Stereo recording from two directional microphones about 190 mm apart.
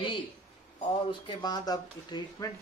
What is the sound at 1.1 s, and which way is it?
Speech, 20° left (ahead or behind).